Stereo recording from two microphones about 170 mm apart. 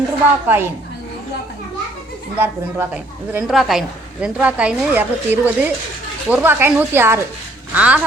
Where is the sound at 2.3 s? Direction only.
10° right (ahead or behind).